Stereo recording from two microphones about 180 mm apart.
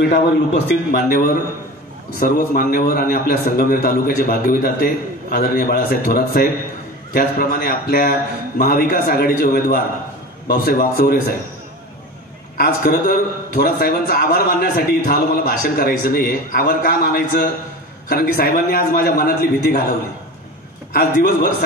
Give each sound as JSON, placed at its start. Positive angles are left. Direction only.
{"t": 0.9, "sound": "a man's voice", "side_deg": 60}
{"t": 12.5, "sound": "a man's voice", "side_deg": 55}